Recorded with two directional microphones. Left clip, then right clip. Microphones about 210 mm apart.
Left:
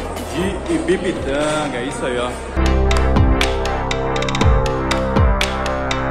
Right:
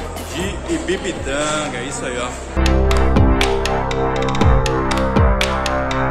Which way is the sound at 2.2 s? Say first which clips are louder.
Left 1 dB; centre (ahead or behind).